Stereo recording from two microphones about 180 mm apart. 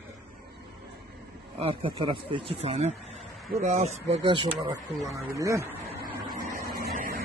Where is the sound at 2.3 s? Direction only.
30° right (ahead or behind).